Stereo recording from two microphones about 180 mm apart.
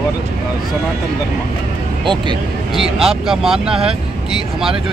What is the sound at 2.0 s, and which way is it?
Speech, 25° right (ahead or behind).